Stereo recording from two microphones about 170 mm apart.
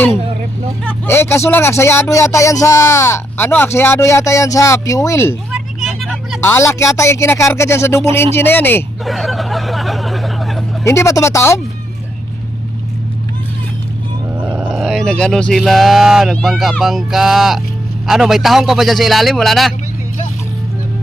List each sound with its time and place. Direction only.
0.9 s speech: 15° left (ahead or behind)
5.5 s vehicle: centre (ahead or behind)
6.4 s speech: 15° left (ahead or behind)
9.0 s vehicle: centre (ahead or behind)
10.8 s speech: 15° left (ahead or behind)
14.3 s a man's voice: 5° right (ahead or behind)